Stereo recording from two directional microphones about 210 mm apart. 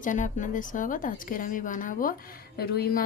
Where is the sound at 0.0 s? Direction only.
40° left (ahead or behind).